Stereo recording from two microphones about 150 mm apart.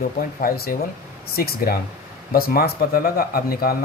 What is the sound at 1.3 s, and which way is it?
Speech, 90° left.